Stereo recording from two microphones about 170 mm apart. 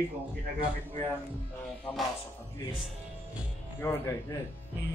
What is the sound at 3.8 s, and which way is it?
Speech, 15° left (ahead or behind).